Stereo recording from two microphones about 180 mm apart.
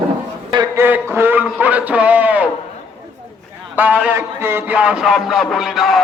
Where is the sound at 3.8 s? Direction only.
10° right (ahead or behind).